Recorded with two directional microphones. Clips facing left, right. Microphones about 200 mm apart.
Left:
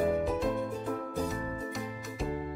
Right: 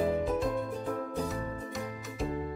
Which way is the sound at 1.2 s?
Centre (ahead or behind).